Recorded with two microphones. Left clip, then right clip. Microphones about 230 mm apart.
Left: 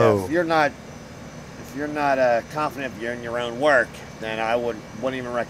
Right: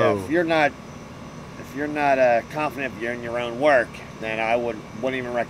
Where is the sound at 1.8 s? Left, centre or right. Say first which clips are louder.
Right 1 dB; centre.